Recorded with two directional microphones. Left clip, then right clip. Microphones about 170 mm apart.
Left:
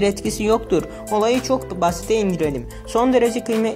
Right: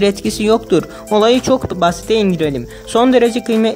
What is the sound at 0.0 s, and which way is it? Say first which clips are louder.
Speech: right 5 dB; 25° right (ahead or behind).